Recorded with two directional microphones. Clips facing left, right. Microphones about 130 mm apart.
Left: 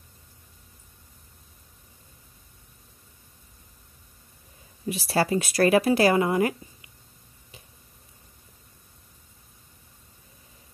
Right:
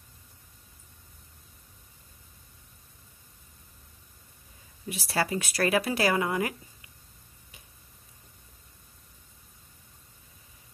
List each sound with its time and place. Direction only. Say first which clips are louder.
4.8 s speech: left 5 dB; 25° left (ahead or behind)